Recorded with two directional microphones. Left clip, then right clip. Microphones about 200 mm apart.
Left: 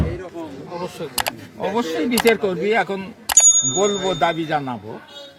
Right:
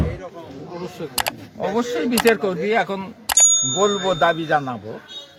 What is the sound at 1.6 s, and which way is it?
Speech, 5° left (ahead or behind).